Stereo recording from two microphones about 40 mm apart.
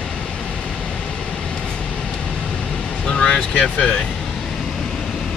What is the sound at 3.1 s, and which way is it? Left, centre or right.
Vehicle, left.